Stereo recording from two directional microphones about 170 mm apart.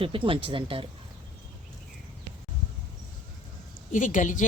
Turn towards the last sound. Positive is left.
turn(degrees=50)  # may be behind; listen again after turning